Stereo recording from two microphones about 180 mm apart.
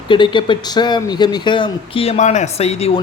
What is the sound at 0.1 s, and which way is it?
Speech, 25° left (ahead or behind).